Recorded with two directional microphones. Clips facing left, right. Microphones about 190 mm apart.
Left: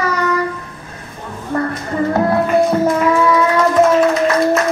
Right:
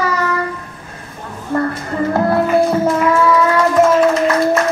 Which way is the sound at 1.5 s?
Centre (ahead or behind).